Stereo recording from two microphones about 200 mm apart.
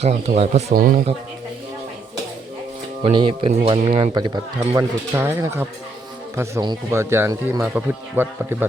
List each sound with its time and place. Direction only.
0.0 s speech: 35° right (ahead or behind)
0.7 s speech: 45° right (ahead or behind)
3.0 s speech: 25° right (ahead or behind); by 8.6 s 5° right (ahead or behind)